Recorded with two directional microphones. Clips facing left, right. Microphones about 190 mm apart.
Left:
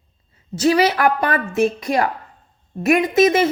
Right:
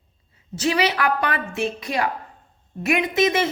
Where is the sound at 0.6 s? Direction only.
40° left (ahead or behind).